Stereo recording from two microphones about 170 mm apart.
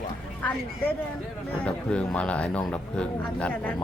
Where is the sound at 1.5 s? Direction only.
5° left (ahead or behind).